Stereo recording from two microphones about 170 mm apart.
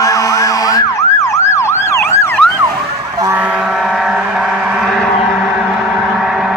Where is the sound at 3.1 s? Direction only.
20° right (ahead or behind).